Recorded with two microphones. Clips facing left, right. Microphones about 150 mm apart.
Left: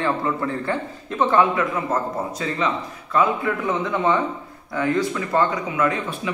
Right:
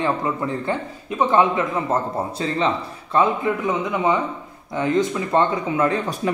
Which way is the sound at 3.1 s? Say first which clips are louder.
Right 1 dB; 20° right (ahead or behind).